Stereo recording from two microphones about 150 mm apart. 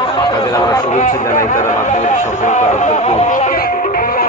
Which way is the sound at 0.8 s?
55° left (ahead or behind).